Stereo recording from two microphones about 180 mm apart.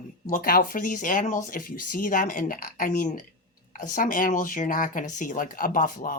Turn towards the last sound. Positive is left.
turn(degrees=50)  # may be behind; listen again after turning